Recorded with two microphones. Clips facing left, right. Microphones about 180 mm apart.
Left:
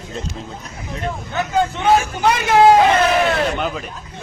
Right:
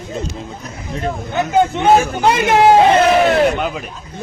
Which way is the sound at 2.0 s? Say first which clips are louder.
Right 4 dB; 30° right (ahead or behind).